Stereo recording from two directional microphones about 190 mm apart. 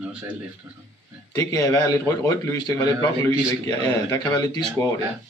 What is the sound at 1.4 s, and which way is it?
A man's voice, 20° left (ahead or behind).